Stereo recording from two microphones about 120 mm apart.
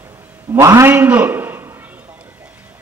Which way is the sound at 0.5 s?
25° right (ahead or behind).